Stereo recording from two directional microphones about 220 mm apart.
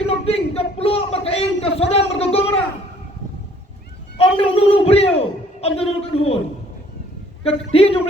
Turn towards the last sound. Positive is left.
turn(degrees=25)  # may be behind; listen again after turning